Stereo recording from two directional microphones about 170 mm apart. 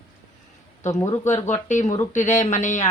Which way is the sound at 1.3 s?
45° left (ahead or behind).